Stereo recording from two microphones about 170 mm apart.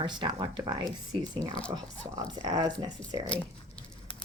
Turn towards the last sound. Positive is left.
turn(degrees=-20)  # may be behind; listen again after turning